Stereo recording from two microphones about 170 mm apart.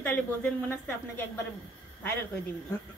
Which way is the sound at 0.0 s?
10° left (ahead or behind).